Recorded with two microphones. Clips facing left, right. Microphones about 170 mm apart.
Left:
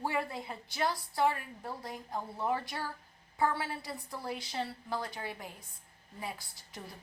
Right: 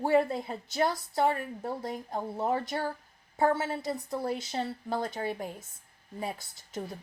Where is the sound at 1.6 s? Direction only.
25° right (ahead or behind).